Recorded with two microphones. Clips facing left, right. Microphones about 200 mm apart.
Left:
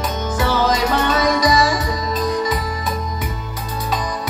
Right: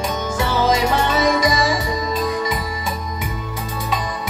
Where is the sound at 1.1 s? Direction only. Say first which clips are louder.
Even; 25° right (ahead or behind).